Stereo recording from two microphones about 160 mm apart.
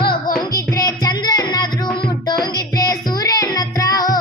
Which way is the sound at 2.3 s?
25° left (ahead or behind).